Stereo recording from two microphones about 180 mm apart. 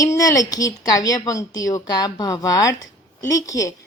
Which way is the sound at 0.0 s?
20° left (ahead or behind).